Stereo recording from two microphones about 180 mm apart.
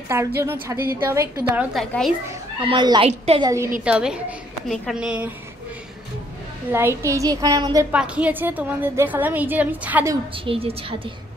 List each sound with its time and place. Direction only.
0.4 s a woman's voice: 15° right (ahead or behind)
1.5 s a woman's voice: 5° right (ahead or behind)
2.6 s a woman's voice: 25° right (ahead or behind)
3.4 s a woman's voice: 15° right (ahead or behind)
3.8 s a woman's voice: 5° right (ahead or behind)
6.7 s a woman's voice: 15° right (ahead or behind)
7.9 s a woman's voice: 5° right (ahead or behind)
10.3 s a woman's voice: 30° right (ahead or behind)